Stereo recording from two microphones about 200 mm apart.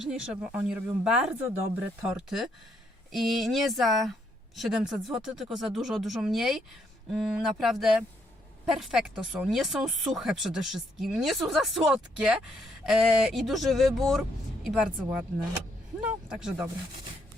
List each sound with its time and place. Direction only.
0.0 s speech: 5° right (ahead or behind)